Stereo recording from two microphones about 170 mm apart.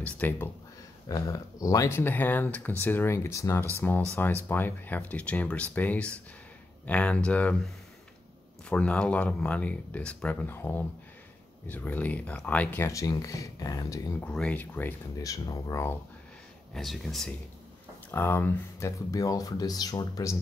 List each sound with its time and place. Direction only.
0.0 s speech: 10° left (ahead or behind)
8.6 s speech: 5° left (ahead or behind)
14.2 s speech: 5° left (ahead or behind)
15.2 s speech: 20° left (ahead or behind)
16.7 s speech: centre (ahead or behind)
18.1 s speech: 10° left (ahead or behind)